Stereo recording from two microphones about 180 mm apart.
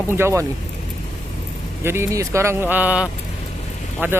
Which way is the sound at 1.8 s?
15° right (ahead or behind).